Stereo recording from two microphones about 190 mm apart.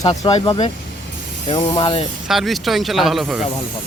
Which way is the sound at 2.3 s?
Centre (ahead or behind).